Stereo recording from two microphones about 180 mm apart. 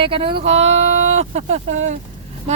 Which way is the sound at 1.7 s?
40° right (ahead or behind).